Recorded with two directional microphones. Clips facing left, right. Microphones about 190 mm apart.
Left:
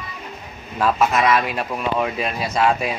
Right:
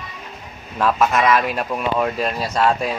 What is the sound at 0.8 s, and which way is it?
Speech, 5° left (ahead or behind).